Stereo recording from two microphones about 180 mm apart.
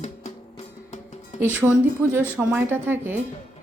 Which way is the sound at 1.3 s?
10° right (ahead or behind).